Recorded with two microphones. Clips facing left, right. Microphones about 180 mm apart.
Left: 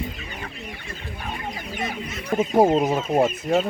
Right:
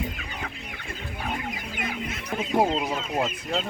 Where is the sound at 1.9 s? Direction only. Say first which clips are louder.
Left 4 dB; 45° left (ahead or behind).